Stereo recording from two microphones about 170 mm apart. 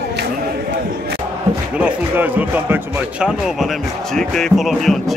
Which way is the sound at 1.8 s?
10° right (ahead or behind).